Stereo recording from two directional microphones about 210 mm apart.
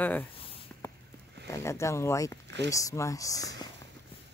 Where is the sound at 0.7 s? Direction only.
5° left (ahead or behind).